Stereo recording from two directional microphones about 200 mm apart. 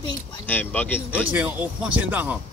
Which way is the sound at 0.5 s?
10° left (ahead or behind).